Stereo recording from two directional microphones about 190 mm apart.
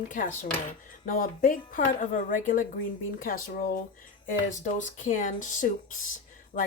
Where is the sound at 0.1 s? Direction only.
45° left (ahead or behind).